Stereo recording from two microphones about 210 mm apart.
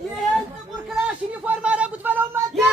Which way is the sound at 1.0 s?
5° right (ahead or behind).